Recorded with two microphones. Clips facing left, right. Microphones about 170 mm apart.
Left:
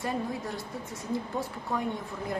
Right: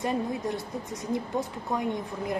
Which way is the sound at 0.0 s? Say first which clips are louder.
Right 4 dB; 20° right (ahead or behind).